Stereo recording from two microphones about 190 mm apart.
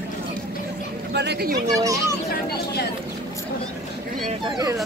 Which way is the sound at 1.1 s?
60° right (ahead or behind).